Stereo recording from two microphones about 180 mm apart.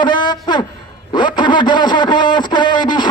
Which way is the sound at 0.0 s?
25° left (ahead or behind).